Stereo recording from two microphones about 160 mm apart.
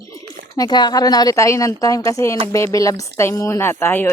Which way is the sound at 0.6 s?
25° left (ahead or behind).